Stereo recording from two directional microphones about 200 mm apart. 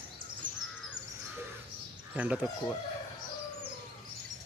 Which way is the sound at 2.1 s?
5° right (ahead or behind).